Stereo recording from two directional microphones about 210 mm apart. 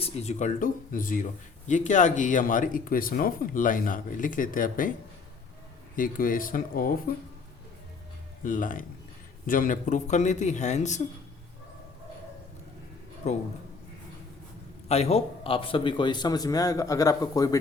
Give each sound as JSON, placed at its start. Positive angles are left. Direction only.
{"t": 0.0, "sound": "speech", "side_deg": 30}
{"t": 6.0, "sound": "speech", "side_deg": 40}
{"t": 8.4, "sound": "speech", "side_deg": 40}
{"t": 13.2, "sound": "speech", "side_deg": 35}
{"t": 14.8, "sound": "a man's voice", "side_deg": 30}